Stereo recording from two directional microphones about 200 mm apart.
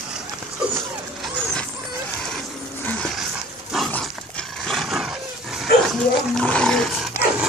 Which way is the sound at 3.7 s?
Centre (ahead or behind).